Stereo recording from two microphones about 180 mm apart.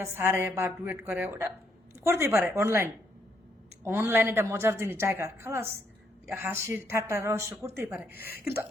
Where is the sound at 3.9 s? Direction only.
10° right (ahead or behind).